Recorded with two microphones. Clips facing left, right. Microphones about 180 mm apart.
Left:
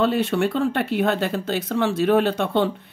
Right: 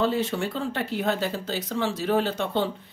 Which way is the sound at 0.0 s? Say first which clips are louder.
Left 5 dB; 65° left (ahead or behind).